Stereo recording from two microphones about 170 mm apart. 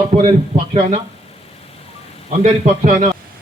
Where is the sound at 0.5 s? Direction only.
40° right (ahead or behind).